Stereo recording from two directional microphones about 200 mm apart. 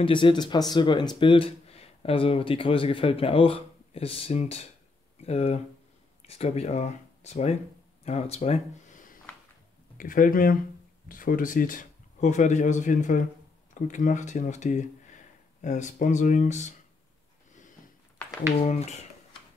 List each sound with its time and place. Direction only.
0.0 s speech: 25° left (ahead or behind)
18.6 s speech: 35° left (ahead or behind)